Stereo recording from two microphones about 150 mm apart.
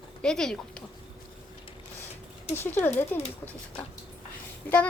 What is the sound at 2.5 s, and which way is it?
Speech, 15° left (ahead or behind).